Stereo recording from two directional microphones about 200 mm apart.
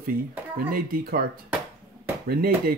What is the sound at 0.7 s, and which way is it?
Speech, 50° right (ahead or behind).